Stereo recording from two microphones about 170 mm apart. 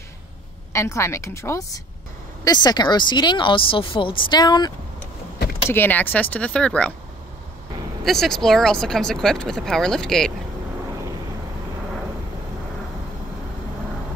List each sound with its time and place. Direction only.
0.7 s speech: 15° left (ahead or behind)
5.7 s speech: 10° left (ahead or behind)
8.0 s speech: centre (ahead or behind)